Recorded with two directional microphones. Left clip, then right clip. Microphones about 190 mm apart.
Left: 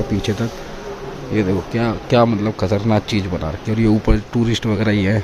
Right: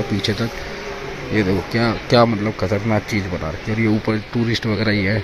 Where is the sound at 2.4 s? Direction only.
15° left (ahead or behind).